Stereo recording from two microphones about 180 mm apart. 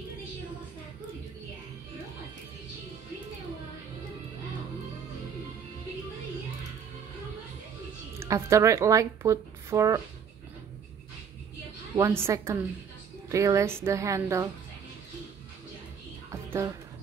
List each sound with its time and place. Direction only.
8.2 s speech: 15° right (ahead or behind)
11.9 s speech: 15° right (ahead or behind)
16.3 s music: 15° right (ahead or behind)